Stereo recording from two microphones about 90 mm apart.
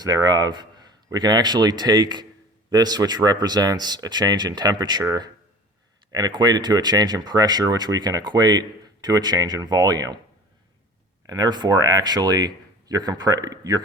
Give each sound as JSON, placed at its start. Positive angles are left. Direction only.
{"t": 0.0, "sound": "speech", "side_deg": -50}
{"t": 6.1, "sound": "speech", "side_deg": -50}
{"t": 11.3, "sound": "speech", "side_deg": -50}